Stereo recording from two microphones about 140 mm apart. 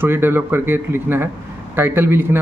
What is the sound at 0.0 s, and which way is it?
Speech, 15° right (ahead or behind).